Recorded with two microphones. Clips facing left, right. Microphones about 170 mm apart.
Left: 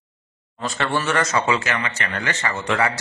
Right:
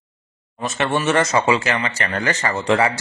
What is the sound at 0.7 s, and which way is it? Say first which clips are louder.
A man's voice: right 4 dB; 25° right (ahead or behind).